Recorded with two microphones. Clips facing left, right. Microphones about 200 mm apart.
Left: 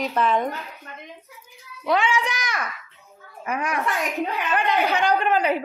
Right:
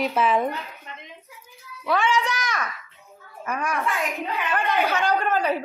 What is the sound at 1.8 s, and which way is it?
A child's voice, 15° left (ahead or behind).